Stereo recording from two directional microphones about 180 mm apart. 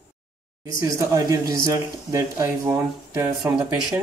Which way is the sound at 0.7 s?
20° right (ahead or behind).